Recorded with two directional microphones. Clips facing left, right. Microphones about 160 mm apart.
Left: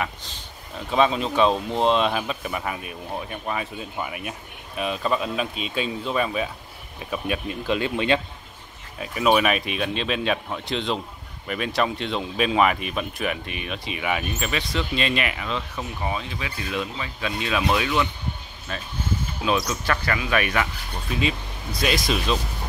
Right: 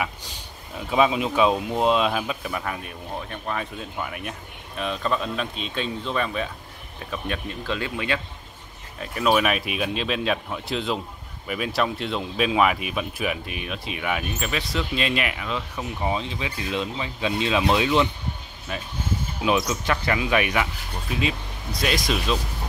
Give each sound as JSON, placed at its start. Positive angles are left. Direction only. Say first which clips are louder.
{"t": 0.0, "sound": "speech", "louder": "even", "side_deg": -10}
{"t": 9.0, "sound": "speech", "louder": "left 1 dB", "side_deg": 5}
{"t": 16.0, "sound": "speech", "louder": "right 3 dB", "side_deg": -25}
{"t": 21.1, "sound": "speech", "louder": "left 1 dB", "side_deg": 0}